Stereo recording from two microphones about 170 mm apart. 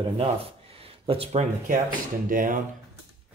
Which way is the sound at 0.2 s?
35° right (ahead or behind).